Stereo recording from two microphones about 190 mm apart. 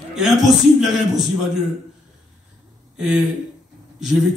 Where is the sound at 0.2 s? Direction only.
Centre (ahead or behind).